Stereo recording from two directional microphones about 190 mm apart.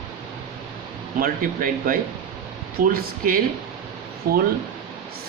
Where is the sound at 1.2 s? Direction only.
45° right (ahead or behind).